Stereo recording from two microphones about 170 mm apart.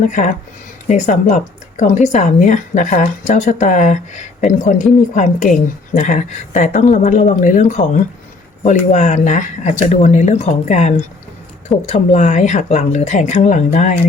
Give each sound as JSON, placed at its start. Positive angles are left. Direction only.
{"t": 0.1, "sound": "speech", "side_deg": 45}